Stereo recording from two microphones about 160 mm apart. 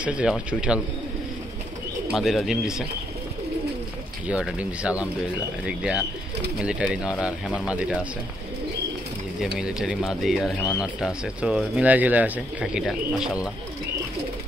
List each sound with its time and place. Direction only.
0.0 s speech: 5° right (ahead or behind)
2.1 s speech: centre (ahead or behind)
4.3 s speech: 5° right (ahead or behind)
9.4 s speech: 5° right (ahead or behind)